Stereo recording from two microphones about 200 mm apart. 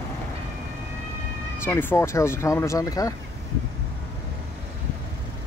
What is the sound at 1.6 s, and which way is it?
Speech, 10° left (ahead or behind).